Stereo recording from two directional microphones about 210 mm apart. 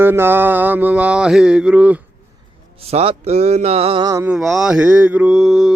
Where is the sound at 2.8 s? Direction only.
30° right (ahead or behind).